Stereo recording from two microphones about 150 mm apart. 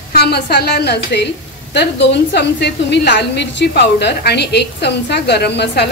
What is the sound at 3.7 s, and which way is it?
Speech, 90° left.